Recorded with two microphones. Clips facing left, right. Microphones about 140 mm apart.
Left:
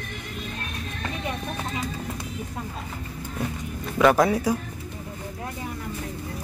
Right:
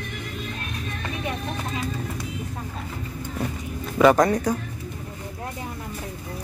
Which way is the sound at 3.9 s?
Centre (ahead or behind).